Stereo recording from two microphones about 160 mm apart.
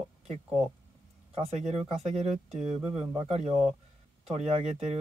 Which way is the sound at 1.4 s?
45° right (ahead or behind).